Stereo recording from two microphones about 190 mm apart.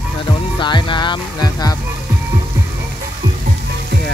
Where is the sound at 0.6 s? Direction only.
25° left (ahead or behind).